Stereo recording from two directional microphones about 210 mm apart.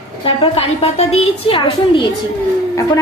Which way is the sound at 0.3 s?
30° left (ahead or behind).